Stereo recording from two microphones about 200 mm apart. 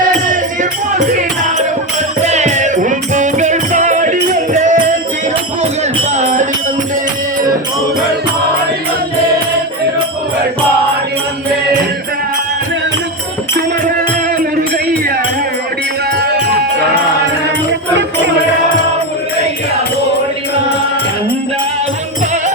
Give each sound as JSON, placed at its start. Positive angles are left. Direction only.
{"t": 0.3, "sound": "music", "side_deg": -40}
{"t": 6.1, "sound": "music", "side_deg": -40}